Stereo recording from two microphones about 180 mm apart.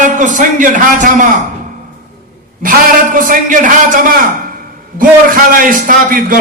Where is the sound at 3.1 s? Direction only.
45° right (ahead or behind).